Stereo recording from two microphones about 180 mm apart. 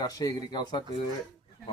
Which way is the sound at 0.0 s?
20° left (ahead or behind).